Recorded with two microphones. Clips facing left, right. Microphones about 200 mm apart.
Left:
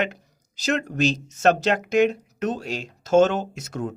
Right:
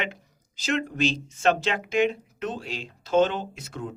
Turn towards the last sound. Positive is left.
turn(degrees=45)  # may be behind; listen again after turning